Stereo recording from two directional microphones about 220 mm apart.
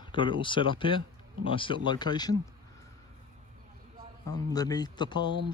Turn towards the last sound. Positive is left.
turn(degrees=20)  # may be behind; listen again after turning